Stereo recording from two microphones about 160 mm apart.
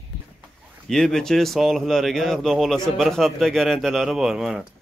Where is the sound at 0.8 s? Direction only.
Centre (ahead or behind).